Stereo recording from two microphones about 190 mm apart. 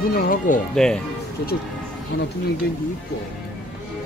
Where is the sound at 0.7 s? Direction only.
5° left (ahead or behind).